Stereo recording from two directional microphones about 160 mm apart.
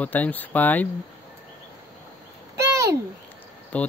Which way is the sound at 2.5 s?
15° right (ahead or behind).